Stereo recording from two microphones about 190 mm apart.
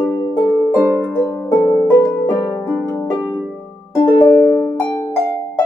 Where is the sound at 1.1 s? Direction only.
10° left (ahead or behind).